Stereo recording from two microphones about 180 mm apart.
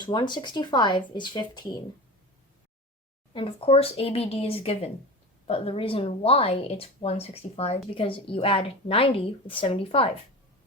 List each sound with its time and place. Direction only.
0.0 s speech: 25° left (ahead or behind)
3.3 s speech: 30° left (ahead or behind)